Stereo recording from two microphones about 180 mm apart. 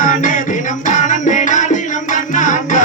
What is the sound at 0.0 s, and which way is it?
Music, 50° left (ahead or behind).